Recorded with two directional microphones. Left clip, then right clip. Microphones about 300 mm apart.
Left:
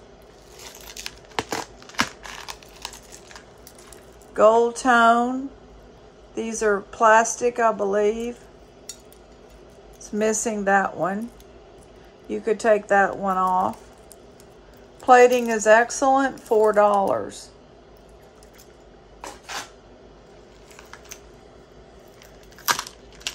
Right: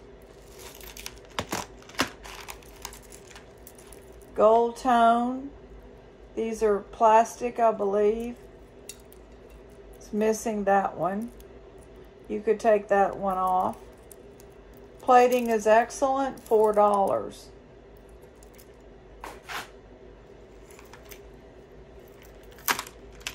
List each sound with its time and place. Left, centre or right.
1.9 s crumpling: left
4.4 s speech: left
6.3 s speech: left
10.1 s speech: left
12.3 s speech: left
15.0 s speech: left
22.7 s a sound: left